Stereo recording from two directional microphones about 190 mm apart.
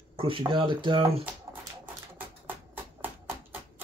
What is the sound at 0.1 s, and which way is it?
Speech, 30° right (ahead or behind).